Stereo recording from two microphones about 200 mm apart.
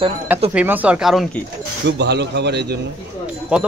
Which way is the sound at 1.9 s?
60° right (ahead or behind).